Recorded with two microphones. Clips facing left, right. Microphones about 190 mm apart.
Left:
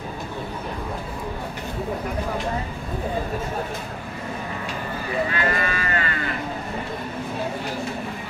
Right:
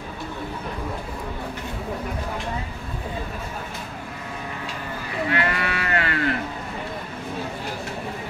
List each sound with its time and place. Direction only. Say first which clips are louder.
5.3 s livestock: even; 65° right (ahead or behind)